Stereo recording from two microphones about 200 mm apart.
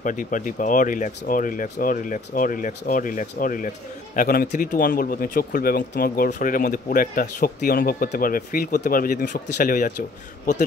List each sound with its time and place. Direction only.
0.0 s speech: 40° left (ahead or behind)